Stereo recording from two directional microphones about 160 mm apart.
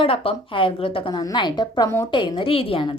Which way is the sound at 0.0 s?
35° left (ahead or behind).